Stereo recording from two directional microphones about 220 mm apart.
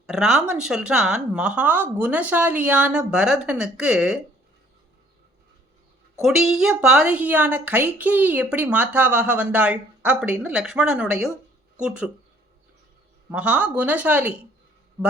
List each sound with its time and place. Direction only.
0.1 s a woman's voice: centre (ahead or behind)
6.2 s a woman's voice: centre (ahead or behind)
13.3 s speech: 5° right (ahead or behind)